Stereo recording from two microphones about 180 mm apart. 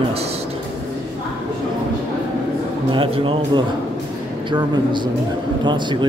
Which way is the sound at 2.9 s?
30° right (ahead or behind).